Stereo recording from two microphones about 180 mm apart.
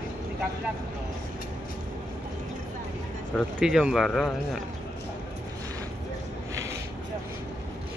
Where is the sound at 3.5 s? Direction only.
5° right (ahead or behind).